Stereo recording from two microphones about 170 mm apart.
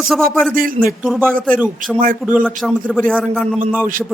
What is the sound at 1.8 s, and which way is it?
Speech, 50° right (ahead or behind).